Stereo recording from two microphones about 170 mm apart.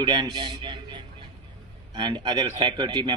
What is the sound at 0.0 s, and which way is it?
A man's voice, 25° right (ahead or behind).